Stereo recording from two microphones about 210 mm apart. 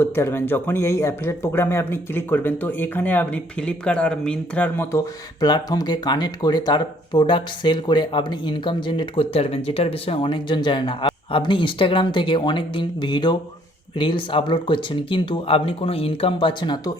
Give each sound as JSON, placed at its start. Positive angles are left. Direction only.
{"t": 0.0, "sound": "speech", "side_deg": 10}